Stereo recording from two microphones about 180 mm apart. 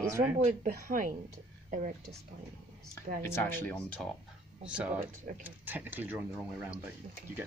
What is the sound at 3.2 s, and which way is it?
Speech, 10° left (ahead or behind).